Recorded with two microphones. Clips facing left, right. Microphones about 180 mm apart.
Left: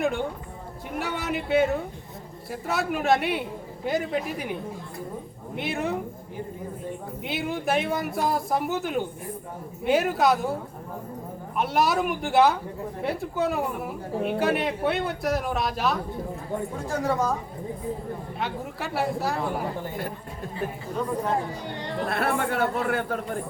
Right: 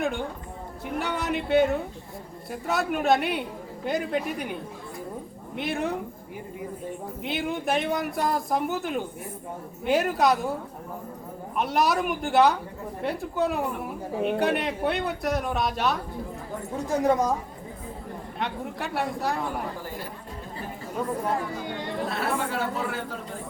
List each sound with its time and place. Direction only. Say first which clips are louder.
0.0 s speech: left 2 dB; centre (ahead or behind)
5.5 s speech: even; centre (ahead or behind)
7.2 s speech: right 1 dB; centre (ahead or behind)
11.5 s speech: left 1 dB; centre (ahead or behind)
16.7 s speech: right 5 dB; 20° right (ahead or behind)
18.3 s speech: right 3 dB; centre (ahead or behind)
22.1 s a man's voice: left 5 dB; 55° left (ahead or behind)